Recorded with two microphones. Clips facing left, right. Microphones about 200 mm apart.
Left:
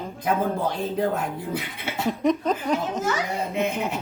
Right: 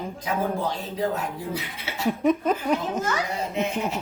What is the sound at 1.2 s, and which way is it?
Speech, 55° left (ahead or behind).